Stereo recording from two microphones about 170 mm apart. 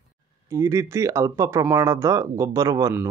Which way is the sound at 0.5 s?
15° right (ahead or behind).